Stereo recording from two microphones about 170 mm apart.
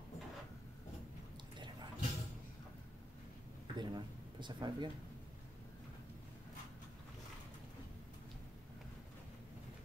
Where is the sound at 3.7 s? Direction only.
25° right (ahead or behind).